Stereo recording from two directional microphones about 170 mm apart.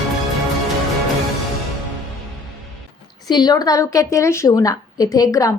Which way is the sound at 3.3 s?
25° left (ahead or behind).